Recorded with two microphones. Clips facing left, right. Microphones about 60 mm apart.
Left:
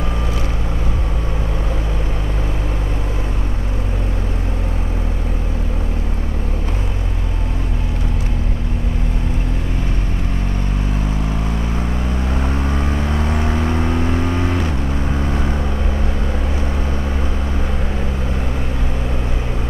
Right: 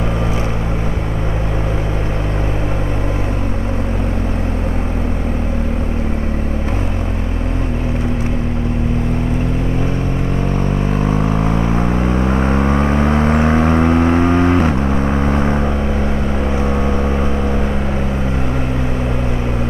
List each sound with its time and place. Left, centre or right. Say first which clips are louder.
11.7 s vehicle: right 7 dB; right